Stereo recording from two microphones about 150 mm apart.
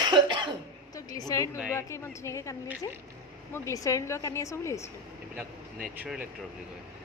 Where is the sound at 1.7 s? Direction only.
20° left (ahead or behind).